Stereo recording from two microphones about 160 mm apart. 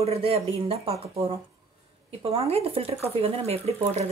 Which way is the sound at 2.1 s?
40° right (ahead or behind).